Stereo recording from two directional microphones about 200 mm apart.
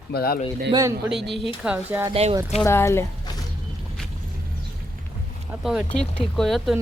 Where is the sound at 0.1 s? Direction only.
50° left (ahead or behind).